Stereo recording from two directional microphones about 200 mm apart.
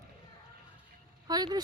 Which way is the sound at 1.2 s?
20° right (ahead or behind).